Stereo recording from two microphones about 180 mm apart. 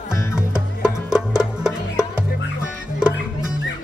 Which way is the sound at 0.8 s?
5° right (ahead or behind).